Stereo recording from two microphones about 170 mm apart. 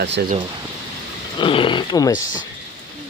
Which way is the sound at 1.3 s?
30° left (ahead or behind).